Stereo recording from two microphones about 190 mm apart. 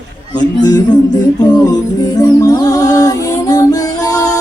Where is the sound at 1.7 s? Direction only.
20° left (ahead or behind).